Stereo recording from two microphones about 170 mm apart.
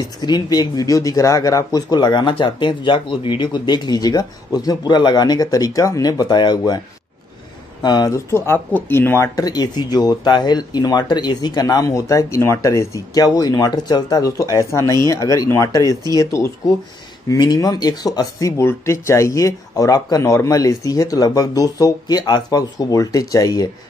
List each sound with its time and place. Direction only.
0.2 s speech: 25° left (ahead or behind)
7.8 s speech: 25° left (ahead or behind)